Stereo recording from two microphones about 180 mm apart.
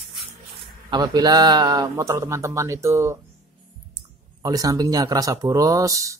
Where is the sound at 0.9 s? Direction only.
20° right (ahead or behind).